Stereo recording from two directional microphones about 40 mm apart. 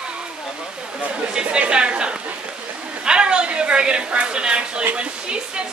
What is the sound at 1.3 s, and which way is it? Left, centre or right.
Speech, right.